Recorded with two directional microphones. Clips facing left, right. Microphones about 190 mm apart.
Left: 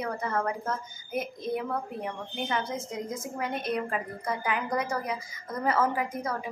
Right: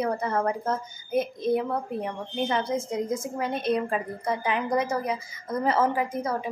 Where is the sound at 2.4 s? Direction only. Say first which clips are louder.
Right 5 dB; 30° right (ahead or behind).